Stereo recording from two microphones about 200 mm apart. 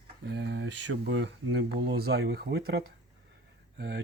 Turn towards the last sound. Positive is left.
turn(degrees=-60)  # may be behind; listen again after turning